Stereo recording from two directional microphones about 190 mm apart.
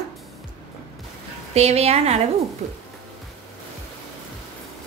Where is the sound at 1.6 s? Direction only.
35° right (ahead or behind).